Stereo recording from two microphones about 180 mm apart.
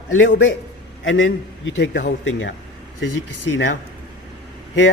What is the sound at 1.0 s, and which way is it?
A man's voice, 90° left.